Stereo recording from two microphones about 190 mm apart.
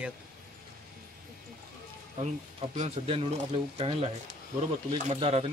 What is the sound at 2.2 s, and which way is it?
Speech, 35° right (ahead or behind).